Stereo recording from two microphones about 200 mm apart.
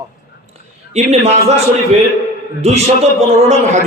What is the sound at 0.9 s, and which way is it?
Speech, 35° right (ahead or behind).